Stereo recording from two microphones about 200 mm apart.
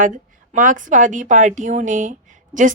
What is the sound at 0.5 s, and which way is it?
A woman's voice, 40° right (ahead or behind).